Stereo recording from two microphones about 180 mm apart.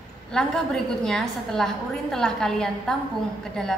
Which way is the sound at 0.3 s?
5° left (ahead or behind).